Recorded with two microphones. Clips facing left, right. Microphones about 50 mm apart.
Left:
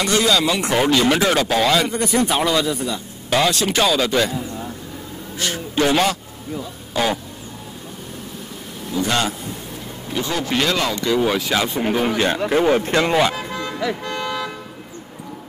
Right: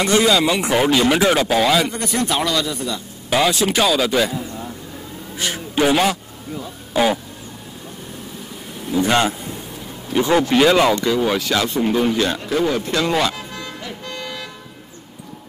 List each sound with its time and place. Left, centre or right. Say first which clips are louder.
0.0 s speech: right 2 dB; centre
3.3 s speech: right 1 dB; centre
5.4 s a man's voice: right 1 dB; centre
8.9 s a man's voice: right 4 dB; right
10.5 s speech: right 5 dB; centre
11.0 s speech: even; centre
12.4 s speech: left 3 dB; left
13.1 s speech: left 2 dB; centre